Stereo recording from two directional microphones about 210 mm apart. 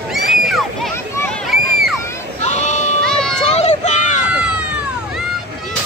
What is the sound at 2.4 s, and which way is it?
Sheep, 35° left (ahead or behind).